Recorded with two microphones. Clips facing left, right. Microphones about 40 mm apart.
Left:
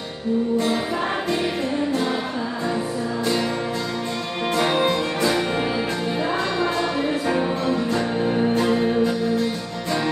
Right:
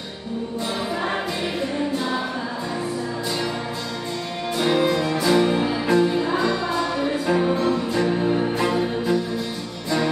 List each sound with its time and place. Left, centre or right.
4.6 s music: left
7.2 s music: centre